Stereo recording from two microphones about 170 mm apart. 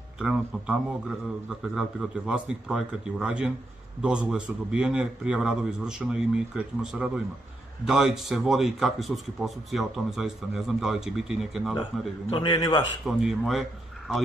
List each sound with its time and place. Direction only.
0.2 s a man's voice: 5° right (ahead or behind)
1.8 s a man's voice: 5° right (ahead or behind)
12.3 s a man's voice: 30° left (ahead or behind)
13.0 s a man's voice: centre (ahead or behind)